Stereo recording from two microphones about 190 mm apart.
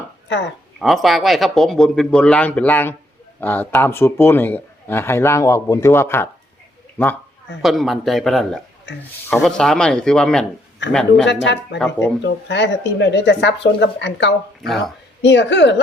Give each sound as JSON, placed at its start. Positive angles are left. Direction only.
{"t": 0.3, "sound": "speech", "side_deg": 70}
{"t": 0.8, "sound": "speech", "side_deg": 0}
{"t": 7.6, "sound": "speech", "side_deg": 0}
{"t": 8.9, "sound": "a woman's voice", "side_deg": 70}
{"t": 9.3, "sound": "speech", "side_deg": 5}
{"t": 10.8, "sound": "a woman's voice", "side_deg": 70}